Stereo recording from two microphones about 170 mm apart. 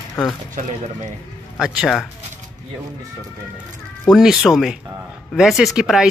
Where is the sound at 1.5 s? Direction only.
Centre (ahead or behind).